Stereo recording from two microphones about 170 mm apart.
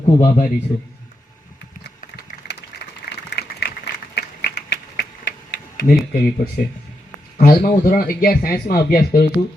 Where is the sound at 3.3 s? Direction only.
85° left.